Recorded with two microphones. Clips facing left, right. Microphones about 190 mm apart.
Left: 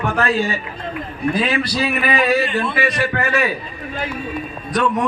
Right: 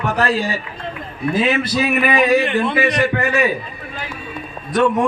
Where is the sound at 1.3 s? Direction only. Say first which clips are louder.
Right 4 dB; 20° right (ahead or behind).